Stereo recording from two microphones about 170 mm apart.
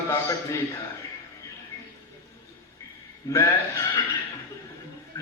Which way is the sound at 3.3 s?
15° left (ahead or behind).